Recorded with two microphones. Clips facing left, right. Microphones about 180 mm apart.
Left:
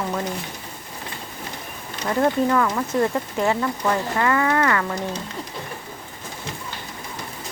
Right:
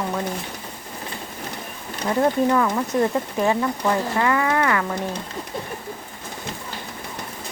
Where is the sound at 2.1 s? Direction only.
15° right (ahead or behind).